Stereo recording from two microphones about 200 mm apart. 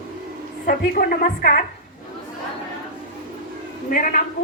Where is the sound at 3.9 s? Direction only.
40° left (ahead or behind).